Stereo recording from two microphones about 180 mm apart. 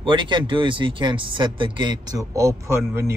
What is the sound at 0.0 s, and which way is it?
Speech, 25° right (ahead or behind).